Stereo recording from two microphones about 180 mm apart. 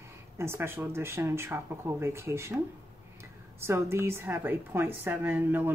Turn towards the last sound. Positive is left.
turn(degrees=-10)  # may be behind; listen again after turning